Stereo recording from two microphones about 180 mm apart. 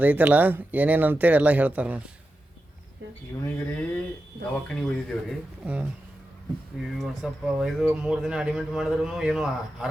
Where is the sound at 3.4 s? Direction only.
10° left (ahead or behind).